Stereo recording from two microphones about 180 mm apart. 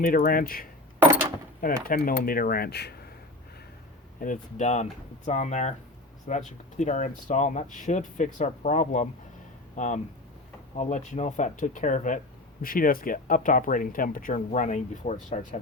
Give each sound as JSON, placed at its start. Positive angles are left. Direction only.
{"t": 0.0, "sound": "speech", "side_deg": 50}
{"t": 4.2, "sound": "speech", "side_deg": 45}